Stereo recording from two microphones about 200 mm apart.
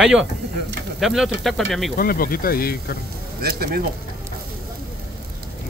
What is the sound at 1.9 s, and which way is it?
Speech, 45° left (ahead or behind).